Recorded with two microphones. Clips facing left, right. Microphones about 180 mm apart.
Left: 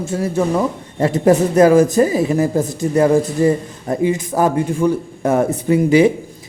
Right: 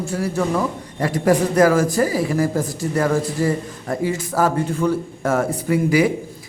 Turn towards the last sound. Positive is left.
turn(degrees=25)  # may be behind; listen again after turning